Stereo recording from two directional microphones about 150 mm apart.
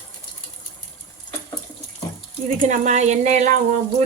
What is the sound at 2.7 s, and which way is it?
Speech, 50° right (ahead or behind).